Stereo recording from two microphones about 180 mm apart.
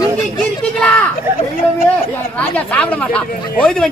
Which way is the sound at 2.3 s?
5° left (ahead or behind).